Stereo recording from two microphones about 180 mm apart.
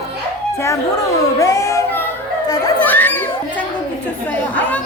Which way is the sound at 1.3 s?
15° left (ahead or behind).